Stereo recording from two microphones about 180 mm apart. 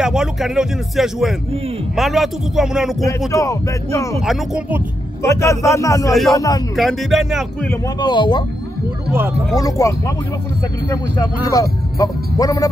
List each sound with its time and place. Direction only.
0.0 s speech: 5° right (ahead or behind)
3.3 s speech: 15° left (ahead or behind)
4.2 s speech: 5° right (ahead or behind)
5.2 s speech: 15° left (ahead or behind)
6.8 s speech: centre (ahead or behind)
7.6 s speech: 15° left (ahead or behind)
9.6 s speech: 20° left (ahead or behind)
11.1 s speech: 20° left (ahead or behind)